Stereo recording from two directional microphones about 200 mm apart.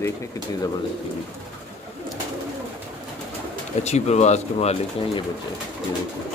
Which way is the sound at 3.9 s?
35° left (ahead or behind).